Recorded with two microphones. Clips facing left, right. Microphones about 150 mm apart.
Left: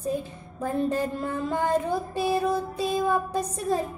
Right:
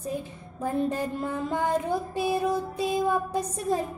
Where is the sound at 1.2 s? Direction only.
15° right (ahead or behind).